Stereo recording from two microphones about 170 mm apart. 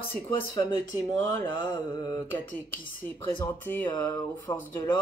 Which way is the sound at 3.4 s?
15° left (ahead or behind).